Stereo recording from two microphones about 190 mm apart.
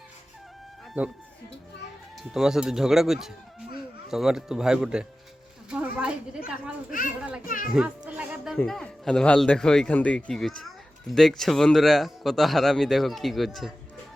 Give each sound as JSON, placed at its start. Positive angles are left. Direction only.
{"t": 2.3, "sound": "speech", "side_deg": -5}
{"t": 5.7, "sound": "a sound", "side_deg": -5}
{"t": 7.2, "sound": "speech", "side_deg": -5}
{"t": 7.4, "sound": "a child's voice", "side_deg": 45}
{"t": 7.7, "sound": "music", "side_deg": -5}
{"t": 8.5, "sound": "speech", "side_deg": 0}